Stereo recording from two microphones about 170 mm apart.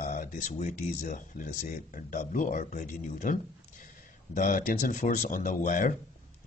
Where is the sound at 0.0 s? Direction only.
50° left (ahead or behind).